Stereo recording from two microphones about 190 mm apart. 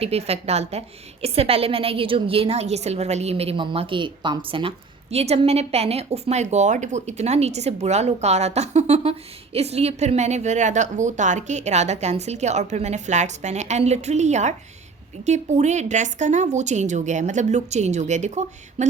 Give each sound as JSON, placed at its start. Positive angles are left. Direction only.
{"t": 0.0, "sound": "speech", "side_deg": -30}